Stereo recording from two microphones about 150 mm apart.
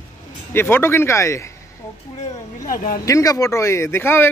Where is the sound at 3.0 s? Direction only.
20° left (ahead or behind).